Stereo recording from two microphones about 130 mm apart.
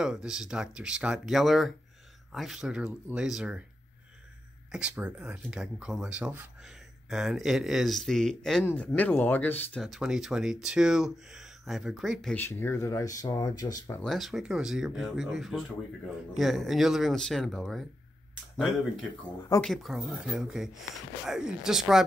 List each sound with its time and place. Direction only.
0.0 s speech: 5° right (ahead or behind)
4.7 s speech: 10° right (ahead or behind); by 9.7 s 15° left (ahead or behind)
9.8 s speech: centre (ahead or behind)
12.4 s speech: 20° left (ahead or behind)
14.0 s speech: centre (ahead or behind)
19.6 s speech: centre (ahead or behind)